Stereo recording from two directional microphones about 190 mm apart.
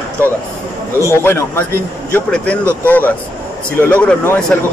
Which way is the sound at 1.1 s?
15° left (ahead or behind).